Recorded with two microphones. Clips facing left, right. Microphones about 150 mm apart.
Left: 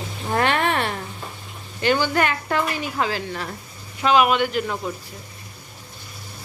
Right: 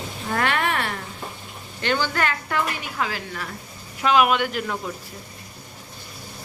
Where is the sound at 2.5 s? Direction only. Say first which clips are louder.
Left 3 dB; 30° left (ahead or behind).